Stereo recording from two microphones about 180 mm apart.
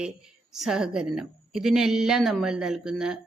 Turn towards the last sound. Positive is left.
turn(degrees=-5)  # may be behind; listen again after turning